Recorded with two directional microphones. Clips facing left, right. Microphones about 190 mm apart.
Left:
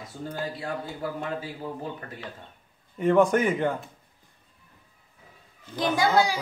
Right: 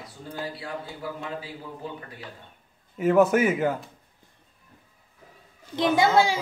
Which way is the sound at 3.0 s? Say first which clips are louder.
Right 1 dB; 5° right (ahead or behind).